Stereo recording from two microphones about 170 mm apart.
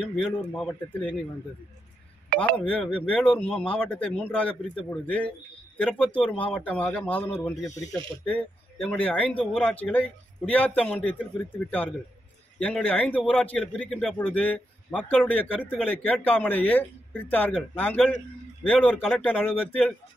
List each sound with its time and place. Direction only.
0.0 s a man's voice: centre (ahead or behind)
2.3 s a sound: 60° right (ahead or behind)
2.7 s a man's voice: 5° left (ahead or behind)
12.5 s a man's voice: 10° left (ahead or behind)